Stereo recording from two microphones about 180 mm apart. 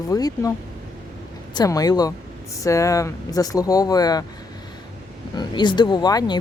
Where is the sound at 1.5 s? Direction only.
20° left (ahead or behind).